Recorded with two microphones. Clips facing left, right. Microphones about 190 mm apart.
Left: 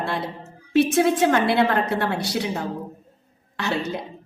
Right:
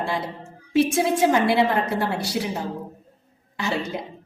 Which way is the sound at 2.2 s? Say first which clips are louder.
Left 1 dB; 75° left (ahead or behind).